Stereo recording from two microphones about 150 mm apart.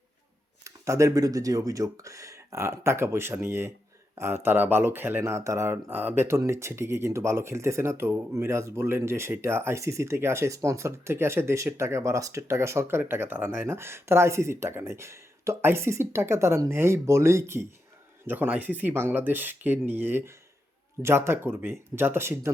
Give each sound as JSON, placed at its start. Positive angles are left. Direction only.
{"t": 0.6, "sound": "speech", "side_deg": -20}